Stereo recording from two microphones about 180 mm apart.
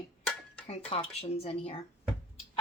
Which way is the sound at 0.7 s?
35° left (ahead or behind).